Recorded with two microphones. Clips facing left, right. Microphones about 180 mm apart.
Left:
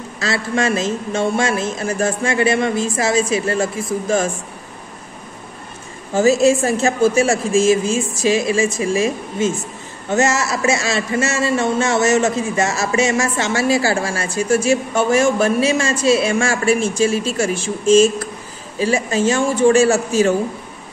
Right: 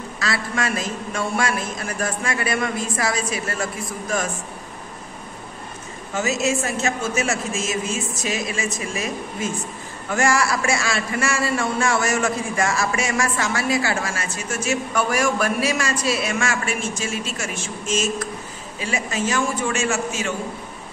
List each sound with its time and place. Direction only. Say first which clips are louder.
0.2 s a man's voice: left 6 dB; 25° left (ahead or behind)
6.1 s a woman's voice: left 9 dB; 30° left (ahead or behind)